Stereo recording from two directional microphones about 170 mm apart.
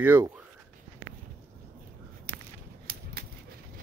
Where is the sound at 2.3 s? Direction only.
60° right (ahead or behind).